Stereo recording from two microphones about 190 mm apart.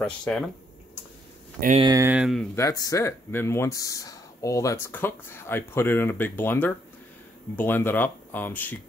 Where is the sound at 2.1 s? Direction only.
5° right (ahead or behind).